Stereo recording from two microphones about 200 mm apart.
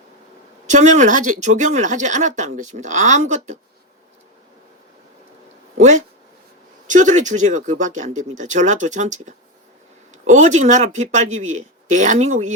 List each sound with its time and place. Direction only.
0.7 s speech: 35° right (ahead or behind)
6.8 s speech: 40° right (ahead or behind)